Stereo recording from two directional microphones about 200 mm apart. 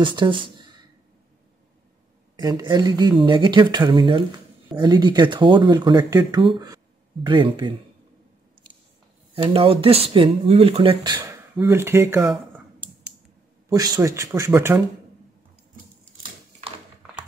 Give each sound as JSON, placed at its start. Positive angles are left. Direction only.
{"t": 0.0, "sound": "speech", "side_deg": -25}
{"t": 2.3, "sound": "speech", "side_deg": -20}
{"t": 9.3, "sound": "speech", "side_deg": -25}
{"t": 11.5, "sound": "speech", "side_deg": -10}
{"t": 13.7, "sound": "speech", "side_deg": -20}